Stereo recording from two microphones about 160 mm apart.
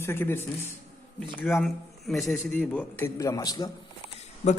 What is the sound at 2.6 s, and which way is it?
A man's voice, 15° left (ahead or behind).